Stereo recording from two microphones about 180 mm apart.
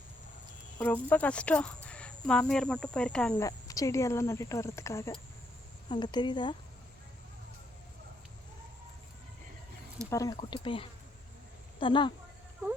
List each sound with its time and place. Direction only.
0.8 s speech: 10° left (ahead or behind)
3.4 s speech: 20° left (ahead or behind)
10.1 s speech: 20° left (ahead or behind)